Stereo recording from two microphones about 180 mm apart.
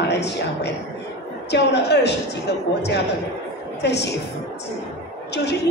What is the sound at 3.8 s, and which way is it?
Speech, 70° left (ahead or behind).